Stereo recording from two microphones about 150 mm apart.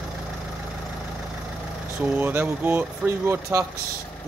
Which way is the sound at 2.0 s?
10° right (ahead or behind).